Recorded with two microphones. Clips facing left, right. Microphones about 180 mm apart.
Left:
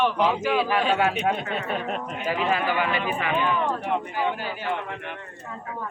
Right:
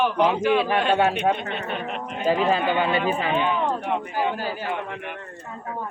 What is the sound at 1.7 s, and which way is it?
Speech, 40° left (ahead or behind).